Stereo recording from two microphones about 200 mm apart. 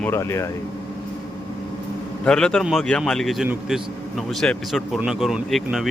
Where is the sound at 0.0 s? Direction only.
10° left (ahead or behind).